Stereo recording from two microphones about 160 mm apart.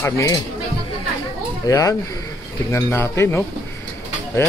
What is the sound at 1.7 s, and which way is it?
Speech, 20° left (ahead or behind).